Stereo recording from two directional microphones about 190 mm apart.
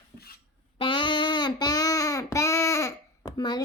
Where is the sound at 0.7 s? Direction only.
25° left (ahead or behind).